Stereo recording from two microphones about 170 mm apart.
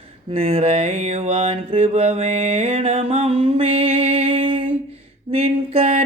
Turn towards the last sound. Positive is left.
turn(degrees=-35)  # may be behind; listen again after turning